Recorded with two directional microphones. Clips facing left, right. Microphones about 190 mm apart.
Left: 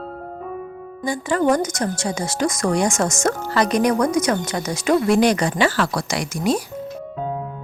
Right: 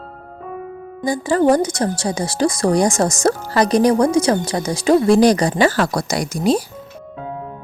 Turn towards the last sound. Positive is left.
turn(degrees=-30)  # may be behind; listen again after turning